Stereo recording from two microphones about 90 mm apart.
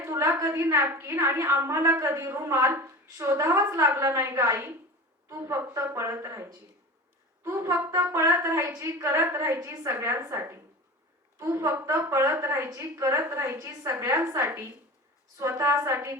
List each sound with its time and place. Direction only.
0.0 s a woman's voice: 30° right (ahead or behind)